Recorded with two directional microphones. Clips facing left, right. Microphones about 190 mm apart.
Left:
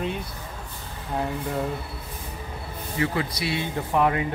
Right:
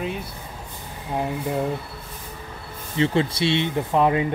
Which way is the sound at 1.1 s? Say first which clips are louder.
Right 2 dB; 15° right (ahead or behind).